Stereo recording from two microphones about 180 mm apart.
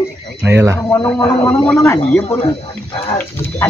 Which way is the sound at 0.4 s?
15° right (ahead or behind).